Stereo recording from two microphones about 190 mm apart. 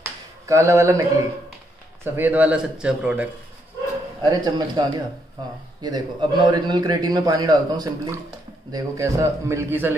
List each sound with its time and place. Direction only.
0.0 s a sound: 15° right (ahead or behind)
2.1 s a man's voice: 10° right (ahead or behind)
4.2 s a man's voice: 20° right (ahead or behind)